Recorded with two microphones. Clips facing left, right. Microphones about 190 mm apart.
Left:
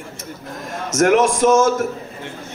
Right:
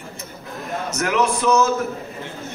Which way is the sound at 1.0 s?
55° left (ahead or behind).